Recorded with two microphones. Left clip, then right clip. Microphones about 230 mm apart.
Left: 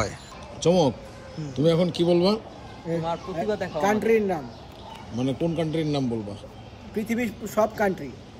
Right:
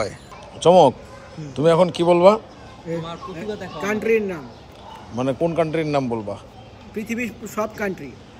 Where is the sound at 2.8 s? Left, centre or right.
Centre.